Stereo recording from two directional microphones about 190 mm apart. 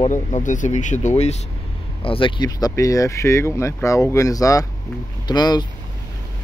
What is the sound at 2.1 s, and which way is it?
Speech, 25° left (ahead or behind).